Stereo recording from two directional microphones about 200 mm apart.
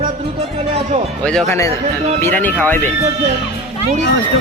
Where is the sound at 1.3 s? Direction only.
5° left (ahead or behind).